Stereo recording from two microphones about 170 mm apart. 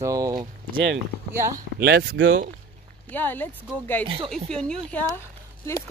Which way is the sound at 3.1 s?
10° left (ahead or behind).